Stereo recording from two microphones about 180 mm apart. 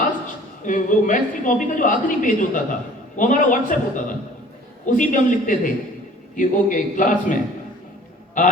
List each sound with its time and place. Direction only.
0.6 s a woman's voice: 45° left (ahead or behind)